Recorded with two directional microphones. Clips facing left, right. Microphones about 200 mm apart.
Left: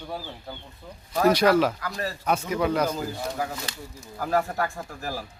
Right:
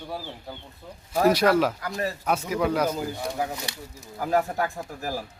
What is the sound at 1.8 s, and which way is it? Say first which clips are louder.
Speech: right 2 dB; 20° right (ahead or behind).